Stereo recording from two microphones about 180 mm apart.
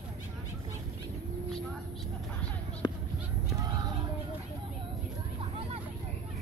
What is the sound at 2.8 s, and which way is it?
Basketball bounce, 20° left (ahead or behind).